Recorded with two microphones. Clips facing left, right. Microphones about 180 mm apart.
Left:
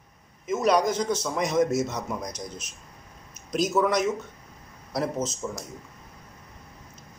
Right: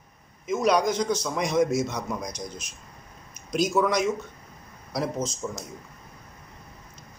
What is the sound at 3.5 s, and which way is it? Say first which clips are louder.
A man's voice: even; 5° left (ahead or behind).